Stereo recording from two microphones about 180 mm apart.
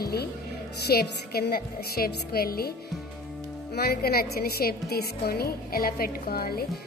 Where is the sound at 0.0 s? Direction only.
60° left (ahead or behind).